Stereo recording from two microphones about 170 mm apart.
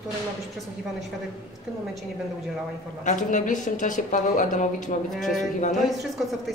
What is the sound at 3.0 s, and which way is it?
A woman's voice, 45° left (ahead or behind).